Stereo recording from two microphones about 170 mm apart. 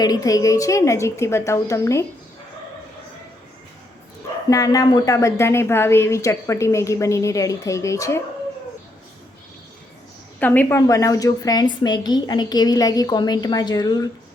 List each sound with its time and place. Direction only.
0.0 s a woman's voice: 20° left (ahead or behind)
4.4 s a woman's voice: 20° left (ahead or behind)
10.4 s a woman's voice: 10° left (ahead or behind)